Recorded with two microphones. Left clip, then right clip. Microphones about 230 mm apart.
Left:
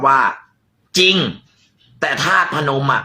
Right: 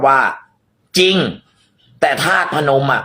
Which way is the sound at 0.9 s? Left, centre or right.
Centre.